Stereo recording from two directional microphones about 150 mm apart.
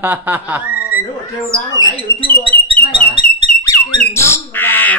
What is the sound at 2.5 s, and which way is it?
Bird, 40° right (ahead or behind).